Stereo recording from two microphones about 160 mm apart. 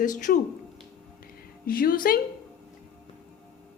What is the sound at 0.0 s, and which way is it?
Speech, 55° left (ahead or behind).